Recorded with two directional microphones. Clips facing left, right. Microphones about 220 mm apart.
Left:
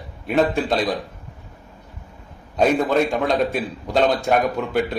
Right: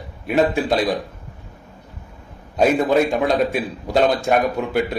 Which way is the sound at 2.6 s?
10° right (ahead or behind).